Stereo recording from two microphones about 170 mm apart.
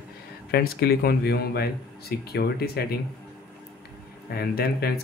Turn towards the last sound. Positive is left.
turn(degrees=65)  # may be behind; listen again after turning